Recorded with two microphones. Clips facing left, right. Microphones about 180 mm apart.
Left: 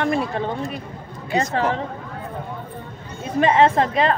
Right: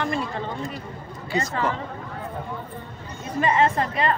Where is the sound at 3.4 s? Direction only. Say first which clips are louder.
Left 5 dB; 90° left.